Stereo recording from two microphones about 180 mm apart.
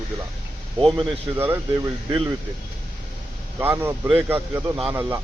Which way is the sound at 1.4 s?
10° right (ahead or behind).